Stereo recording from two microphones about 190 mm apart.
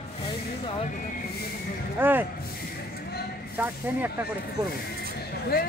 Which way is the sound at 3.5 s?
10° right (ahead or behind).